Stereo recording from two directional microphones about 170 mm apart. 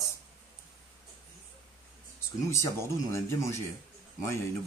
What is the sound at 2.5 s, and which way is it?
Speech, 15° left (ahead or behind).